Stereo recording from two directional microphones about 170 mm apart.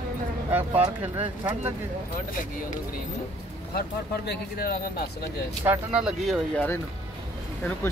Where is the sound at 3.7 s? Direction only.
70° left (ahead or behind).